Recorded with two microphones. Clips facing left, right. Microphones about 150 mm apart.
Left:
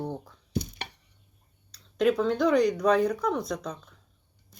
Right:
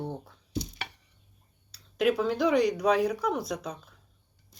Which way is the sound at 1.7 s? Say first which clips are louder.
Left 2 dB; 5° right (ahead or behind).